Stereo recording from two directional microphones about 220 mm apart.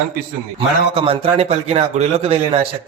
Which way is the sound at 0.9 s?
25° right (ahead or behind).